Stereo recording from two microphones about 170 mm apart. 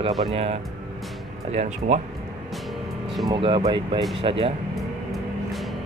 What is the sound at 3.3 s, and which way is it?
Speech, 30° right (ahead or behind).